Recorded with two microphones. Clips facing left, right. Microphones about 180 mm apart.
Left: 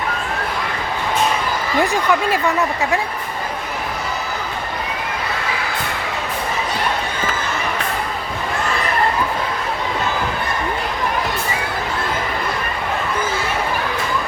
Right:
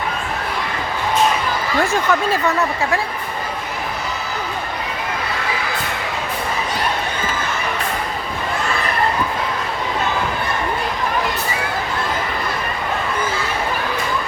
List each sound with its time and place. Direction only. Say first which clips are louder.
1.8 s speech: left 1 dB; 15° left (ahead or behind)